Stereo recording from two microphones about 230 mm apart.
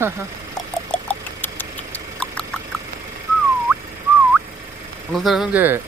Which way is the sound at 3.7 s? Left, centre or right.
Centre.